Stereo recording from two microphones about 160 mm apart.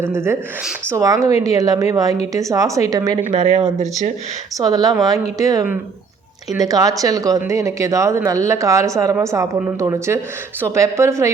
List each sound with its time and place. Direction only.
0.0 s speech: 15° right (ahead or behind)
3.2 s speech: 35° right (ahead or behind)
4.5 s speech: 25° right (ahead or behind)